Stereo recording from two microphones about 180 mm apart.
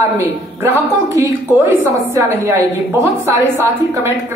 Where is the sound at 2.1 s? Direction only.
15° right (ahead or behind).